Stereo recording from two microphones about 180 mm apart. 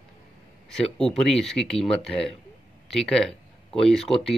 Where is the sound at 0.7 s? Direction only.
5° left (ahead or behind).